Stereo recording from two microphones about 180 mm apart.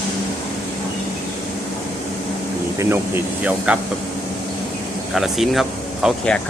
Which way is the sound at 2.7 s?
15° right (ahead or behind).